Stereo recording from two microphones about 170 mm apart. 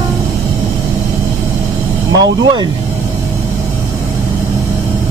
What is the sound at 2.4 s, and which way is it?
Speech, 30° right (ahead or behind).